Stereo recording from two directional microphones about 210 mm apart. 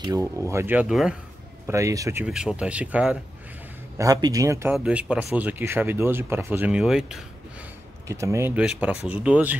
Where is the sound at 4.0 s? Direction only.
15° right (ahead or behind).